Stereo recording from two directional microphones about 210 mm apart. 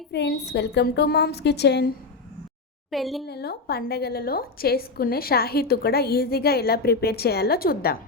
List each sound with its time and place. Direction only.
0.1 s a woman's voice: 55° left (ahead or behind)
2.9 s speech: centre (ahead or behind)
3.2 s a woman's voice: 50° left (ahead or behind)